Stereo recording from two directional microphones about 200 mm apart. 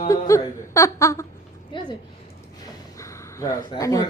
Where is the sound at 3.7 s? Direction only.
15° left (ahead or behind).